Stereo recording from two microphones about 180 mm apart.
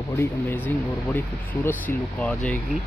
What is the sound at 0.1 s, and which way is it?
Speech, 15° left (ahead or behind).